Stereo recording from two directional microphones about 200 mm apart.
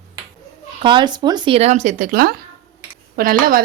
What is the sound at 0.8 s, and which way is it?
A woman's voice, 25° right (ahead or behind).